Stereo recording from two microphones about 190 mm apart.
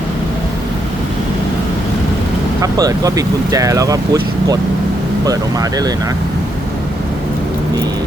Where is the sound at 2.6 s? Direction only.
20° right (ahead or behind).